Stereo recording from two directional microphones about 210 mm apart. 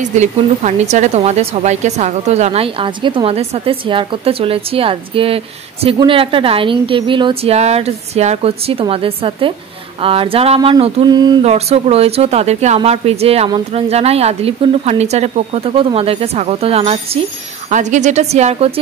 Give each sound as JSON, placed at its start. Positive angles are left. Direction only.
{"t": 0.2, "sound": "speech", "side_deg": -35}